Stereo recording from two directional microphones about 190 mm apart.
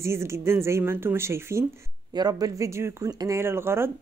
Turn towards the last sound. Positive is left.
turn(degrees=-15)  # may be behind; listen again after turning